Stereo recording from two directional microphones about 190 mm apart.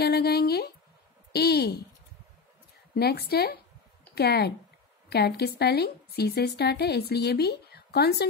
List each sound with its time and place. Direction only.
0.0 s a woman's voice: 55° left (ahead or behind)
2.9 s a woman's voice: 55° left (ahead or behind)